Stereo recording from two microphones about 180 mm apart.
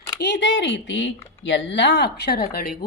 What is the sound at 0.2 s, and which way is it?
Speech, 75° left (ahead or behind).